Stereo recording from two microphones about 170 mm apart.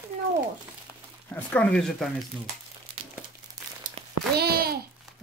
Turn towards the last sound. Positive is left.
turn(degrees=-65)  # may be behind; listen again after turning